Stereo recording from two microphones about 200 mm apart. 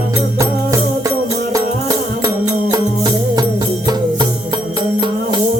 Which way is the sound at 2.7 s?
20° right (ahead or behind).